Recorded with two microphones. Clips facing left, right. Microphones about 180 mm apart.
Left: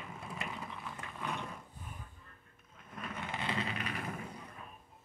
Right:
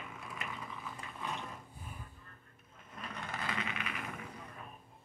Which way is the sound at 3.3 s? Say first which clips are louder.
Left 3 dB; 25° left (ahead or behind).